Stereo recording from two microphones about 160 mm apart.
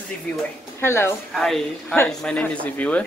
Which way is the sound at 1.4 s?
Centre (ahead or behind).